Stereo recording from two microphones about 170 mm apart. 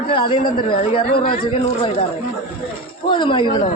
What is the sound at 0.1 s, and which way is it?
A man's voice, 30° left (ahead or behind).